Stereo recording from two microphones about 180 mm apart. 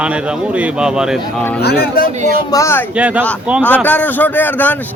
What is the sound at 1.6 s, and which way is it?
Speech, 60° left (ahead or behind).